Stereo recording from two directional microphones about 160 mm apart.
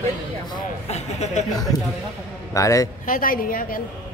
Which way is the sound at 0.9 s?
45° left (ahead or behind).